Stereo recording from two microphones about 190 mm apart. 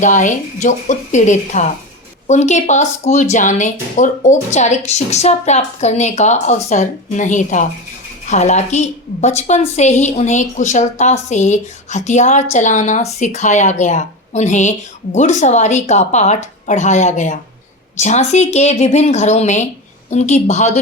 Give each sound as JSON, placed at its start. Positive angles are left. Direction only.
{"t": 0.0, "sound": "a woman's voice", "side_deg": 40}